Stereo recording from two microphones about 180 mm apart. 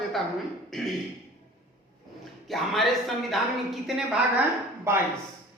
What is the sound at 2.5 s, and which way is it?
A woman's voice, centre (ahead or behind).